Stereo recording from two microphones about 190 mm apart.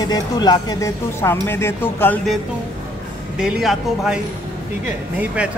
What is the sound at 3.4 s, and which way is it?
Speech, 5° right (ahead or behind).